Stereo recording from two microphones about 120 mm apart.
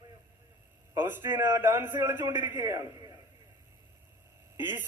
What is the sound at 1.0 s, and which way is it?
A man's voice, 20° right (ahead or behind).